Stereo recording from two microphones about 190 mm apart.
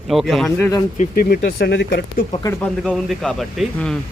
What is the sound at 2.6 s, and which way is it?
Speech, 5° left (ahead or behind).